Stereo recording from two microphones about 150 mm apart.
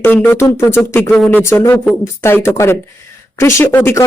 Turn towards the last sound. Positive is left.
turn(degrees=20)  # may be behind; listen again after turning